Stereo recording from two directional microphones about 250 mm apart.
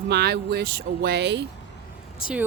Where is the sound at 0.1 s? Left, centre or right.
Right.